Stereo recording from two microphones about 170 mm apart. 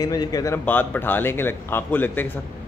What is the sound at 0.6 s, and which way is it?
A man's voice, 10° left (ahead or behind).